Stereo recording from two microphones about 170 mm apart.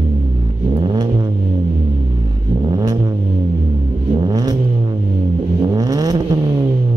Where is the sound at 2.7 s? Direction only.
25° right (ahead or behind).